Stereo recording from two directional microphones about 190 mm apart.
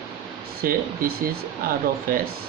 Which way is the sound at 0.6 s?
50° right (ahead or behind).